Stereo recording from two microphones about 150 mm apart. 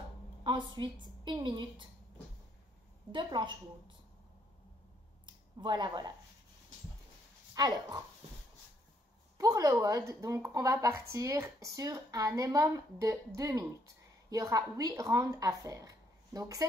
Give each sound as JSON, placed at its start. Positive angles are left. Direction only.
{"t": 0.4, "sound": "a sound", "side_deg": -30}
{"t": 0.7, "sound": "a woman's voice", "side_deg": -30}
{"t": 3.1, "sound": "a woman's voice", "side_deg": -30}
{"t": 5.2, "sound": "a sound", "side_deg": -30}
{"t": 7.5, "sound": "a woman's voice", "side_deg": -25}
{"t": 9.4, "sound": "a woman's voice", "side_deg": -20}